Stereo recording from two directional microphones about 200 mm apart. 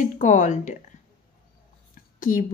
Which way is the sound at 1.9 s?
45° left (ahead or behind).